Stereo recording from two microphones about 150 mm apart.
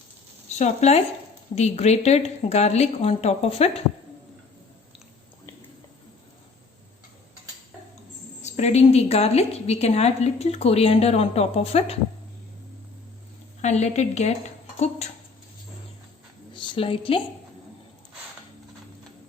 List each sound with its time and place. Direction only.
0.6 s a woman's voice: 45° left (ahead or behind)
8.4 s a woman's voice: 50° left (ahead or behind)
13.6 s a woman's voice: 50° left (ahead or behind)
16.6 s a woman's voice: 35° left (ahead or behind)